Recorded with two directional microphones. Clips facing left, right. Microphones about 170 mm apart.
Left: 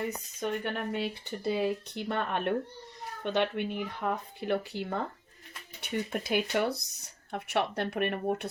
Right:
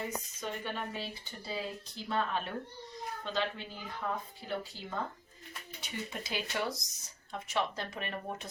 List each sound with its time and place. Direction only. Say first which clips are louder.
0.3 s speech: left 9 dB; 60° left (ahead or behind)